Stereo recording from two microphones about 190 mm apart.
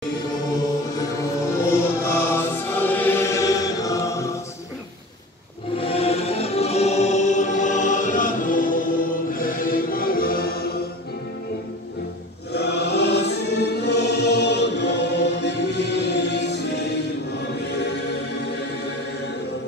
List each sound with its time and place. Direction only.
1.7 s music: 15° left (ahead or behind)
5.8 s music: 30° left (ahead or behind); by 10.6 s 50° left (ahead or behind)
12.5 s choir: 60° left (ahead or behind)